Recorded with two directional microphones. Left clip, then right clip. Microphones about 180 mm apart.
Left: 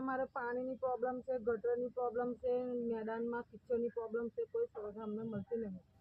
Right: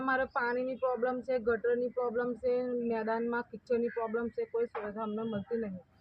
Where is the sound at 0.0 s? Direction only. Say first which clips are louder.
Right 8 dB; centre (ahead or behind).